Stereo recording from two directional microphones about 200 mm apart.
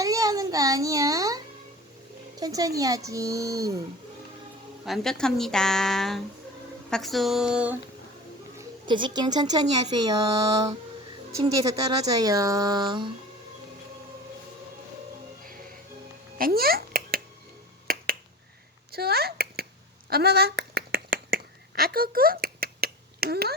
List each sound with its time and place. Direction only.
0.0 s a sound: 15° right (ahead or behind)
2.3 s speech: 20° right (ahead or behind)
4.9 s a woman's voice: centre (ahead or behind)
8.5 s speech: 20° right (ahead or behind)
9.9 s mantra: 20° right (ahead or behind)
11.3 s speech: 15° right (ahead or behind)
16.4 s a sound: 50° right (ahead or behind)
17.8 s finger snapping: 50° right (ahead or behind)
18.9 s a child's voice: 50° right (ahead or behind)
20.1 s a sound: 50° right (ahead or behind)